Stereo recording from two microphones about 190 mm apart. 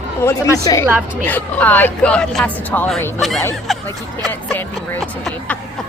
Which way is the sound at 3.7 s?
Centre (ahead or behind).